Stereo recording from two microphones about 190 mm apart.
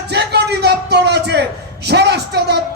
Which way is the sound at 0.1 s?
60° right (ahead or behind).